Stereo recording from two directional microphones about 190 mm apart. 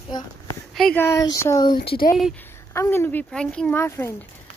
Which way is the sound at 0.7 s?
Centre (ahead or behind).